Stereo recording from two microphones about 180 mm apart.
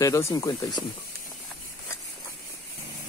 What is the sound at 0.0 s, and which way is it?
Speech, 20° left (ahead or behind).